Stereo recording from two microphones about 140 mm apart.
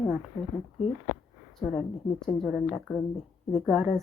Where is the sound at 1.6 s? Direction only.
5° left (ahead or behind).